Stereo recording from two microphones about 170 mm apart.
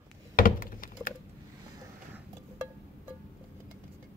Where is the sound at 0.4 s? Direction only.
55° left (ahead or behind).